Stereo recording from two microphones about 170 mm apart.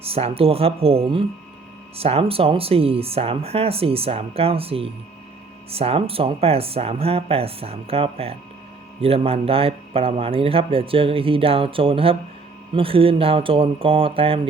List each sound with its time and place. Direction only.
0.0 s speech: 35° right (ahead or behind)